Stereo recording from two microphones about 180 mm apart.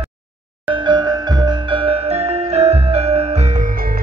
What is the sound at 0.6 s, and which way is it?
Music, 25° right (ahead or behind).